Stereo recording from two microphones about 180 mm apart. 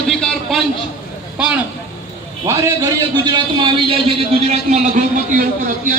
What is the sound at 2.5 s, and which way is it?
A man's voice, 20° right (ahead or behind).